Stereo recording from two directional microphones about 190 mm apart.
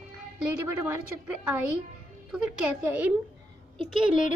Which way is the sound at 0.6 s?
15° right (ahead or behind).